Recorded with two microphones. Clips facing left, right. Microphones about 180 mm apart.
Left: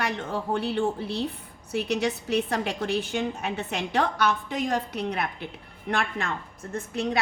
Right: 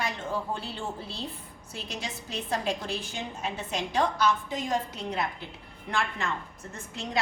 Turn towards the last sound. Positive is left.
turn(degrees=60)  # may be behind; listen again after turning